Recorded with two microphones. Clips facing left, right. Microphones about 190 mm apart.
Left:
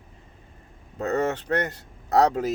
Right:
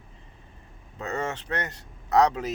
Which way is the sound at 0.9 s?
40° left (ahead or behind).